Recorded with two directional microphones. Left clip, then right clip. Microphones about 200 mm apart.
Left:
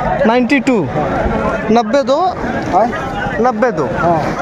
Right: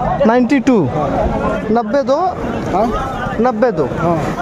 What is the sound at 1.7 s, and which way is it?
Speech, 10° right (ahead or behind).